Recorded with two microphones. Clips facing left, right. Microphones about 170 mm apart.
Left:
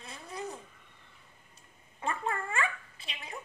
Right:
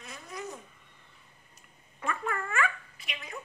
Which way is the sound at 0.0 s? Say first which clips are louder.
Even; 30° left (ahead or behind).